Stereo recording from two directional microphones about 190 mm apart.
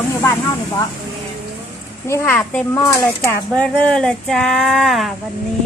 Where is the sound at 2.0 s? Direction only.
15° left (ahead or behind).